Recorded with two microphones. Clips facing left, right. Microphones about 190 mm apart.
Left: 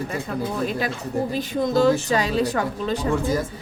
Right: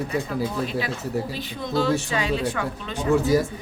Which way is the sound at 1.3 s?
45° left (ahead or behind).